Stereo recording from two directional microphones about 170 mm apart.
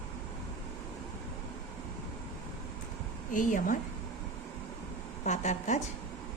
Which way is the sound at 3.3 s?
50° left (ahead or behind).